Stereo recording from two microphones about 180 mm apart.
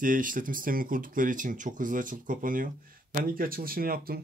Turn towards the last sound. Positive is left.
turn(degrees=-55)  # may be behind; listen again after turning